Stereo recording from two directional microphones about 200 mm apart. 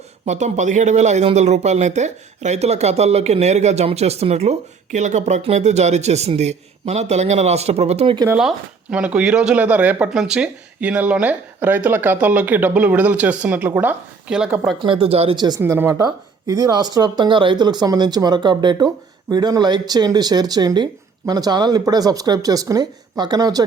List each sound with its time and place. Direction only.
0.3 s speech: 35° right (ahead or behind)
8.3 s speech: 5° right (ahead or behind)
14.8 s a woman's voice: 25° right (ahead or behind)